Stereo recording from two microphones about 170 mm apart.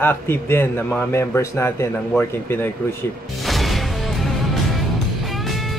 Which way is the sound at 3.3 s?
Centre (ahead or behind).